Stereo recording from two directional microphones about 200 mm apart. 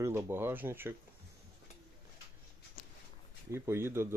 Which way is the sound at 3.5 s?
15° right (ahead or behind).